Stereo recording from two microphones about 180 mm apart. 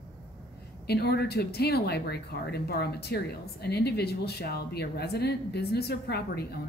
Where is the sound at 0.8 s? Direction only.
65° left (ahead or behind).